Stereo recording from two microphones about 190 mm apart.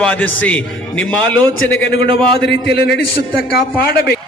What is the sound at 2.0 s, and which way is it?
Speech, 60° left (ahead or behind).